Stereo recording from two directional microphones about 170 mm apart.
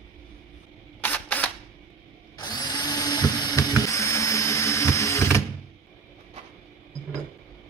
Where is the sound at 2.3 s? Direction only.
25° left (ahead or behind).